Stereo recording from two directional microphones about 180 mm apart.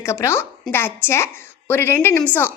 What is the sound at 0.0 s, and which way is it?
A woman's voice, 15° left (ahead or behind).